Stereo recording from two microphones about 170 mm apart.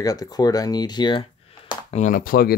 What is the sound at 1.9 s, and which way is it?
Speech, 50° left (ahead or behind).